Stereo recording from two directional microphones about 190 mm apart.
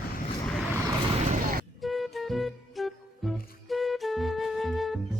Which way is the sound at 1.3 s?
45° right (ahead or behind).